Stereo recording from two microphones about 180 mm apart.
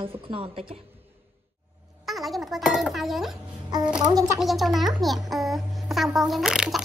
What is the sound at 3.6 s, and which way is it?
Speech, 20° right (ahead or behind).